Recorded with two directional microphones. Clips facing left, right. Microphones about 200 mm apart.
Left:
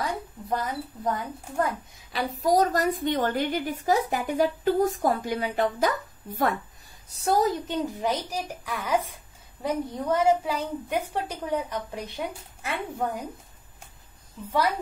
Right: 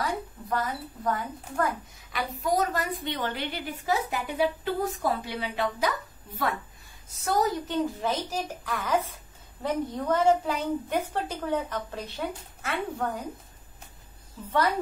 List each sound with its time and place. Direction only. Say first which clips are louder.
0.5 s a woman's voice: left 1 dB; 20° left (ahead or behind)
2.1 s a woman's voice: left 4 dB; 35° left (ahead or behind)
7.1 s a woman's voice: left 4 dB; 35° left (ahead or behind)
7.6 s a woman's voice: even; 20° left (ahead or behind)